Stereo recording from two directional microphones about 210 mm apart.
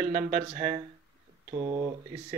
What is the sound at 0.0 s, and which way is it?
Speech, 30° right (ahead or behind).